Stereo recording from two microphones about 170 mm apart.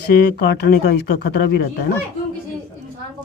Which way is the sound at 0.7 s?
65° left (ahead or behind).